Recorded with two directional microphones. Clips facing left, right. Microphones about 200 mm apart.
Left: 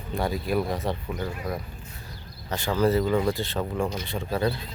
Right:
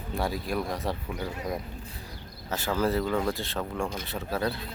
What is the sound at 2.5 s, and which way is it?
Speech, 5° right (ahead or behind).